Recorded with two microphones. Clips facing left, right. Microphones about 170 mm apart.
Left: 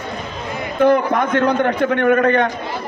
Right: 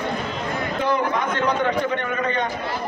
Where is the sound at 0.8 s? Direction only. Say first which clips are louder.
Left 9 dB; 55° left (ahead or behind).